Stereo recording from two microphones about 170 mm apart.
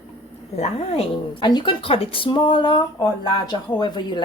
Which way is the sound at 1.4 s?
25° left (ahead or behind).